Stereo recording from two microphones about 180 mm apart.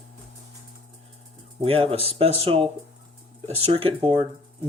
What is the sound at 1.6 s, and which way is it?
Speech, 30° right (ahead or behind).